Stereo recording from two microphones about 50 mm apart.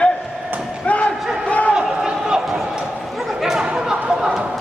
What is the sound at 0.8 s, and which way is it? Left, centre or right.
Battle cry, left.